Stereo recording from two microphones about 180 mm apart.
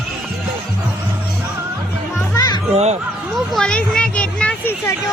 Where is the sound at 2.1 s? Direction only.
20° left (ahead or behind).